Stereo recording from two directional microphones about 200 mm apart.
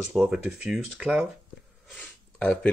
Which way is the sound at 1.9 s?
5° left (ahead or behind).